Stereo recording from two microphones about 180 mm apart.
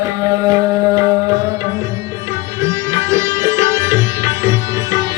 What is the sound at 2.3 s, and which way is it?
Sitar, 15° right (ahead or behind).